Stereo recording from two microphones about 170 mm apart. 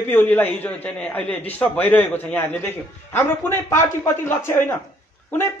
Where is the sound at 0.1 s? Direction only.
10° left (ahead or behind).